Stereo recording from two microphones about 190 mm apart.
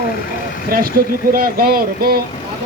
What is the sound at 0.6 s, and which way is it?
Speech, 50° right (ahead or behind).